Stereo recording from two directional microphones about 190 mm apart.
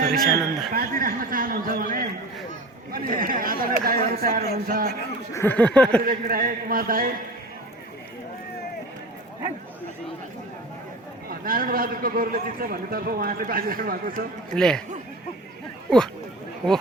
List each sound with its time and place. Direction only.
0.0 s a sound: 50° right (ahead or behind)
0.7 s a man's voice: 50° right (ahead or behind)
5.3 s a sound: 10° left (ahead or behind)
6.1 s a man's voice: 50° right (ahead or behind)
11.3 s a man's voice: 50° right (ahead or behind)
14.5 s speech: 5° left (ahead or behind)